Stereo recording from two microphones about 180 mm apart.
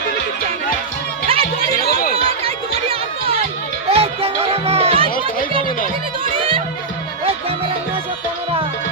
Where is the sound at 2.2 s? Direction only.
30° right (ahead or behind).